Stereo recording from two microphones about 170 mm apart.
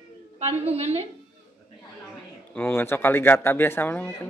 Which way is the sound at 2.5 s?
15° left (ahead or behind).